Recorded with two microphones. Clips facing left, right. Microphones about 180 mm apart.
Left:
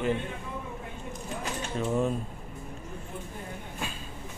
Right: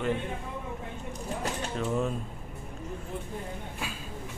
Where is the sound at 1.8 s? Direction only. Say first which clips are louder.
Left 3 dB; centre (ahead or behind).